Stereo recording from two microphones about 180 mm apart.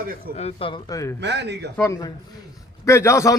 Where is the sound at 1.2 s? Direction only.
70° right (ahead or behind).